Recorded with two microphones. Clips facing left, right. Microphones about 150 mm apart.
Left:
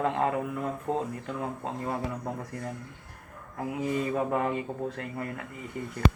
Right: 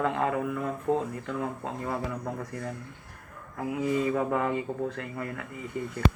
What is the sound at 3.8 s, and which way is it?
Speech, 20° left (ahead or behind).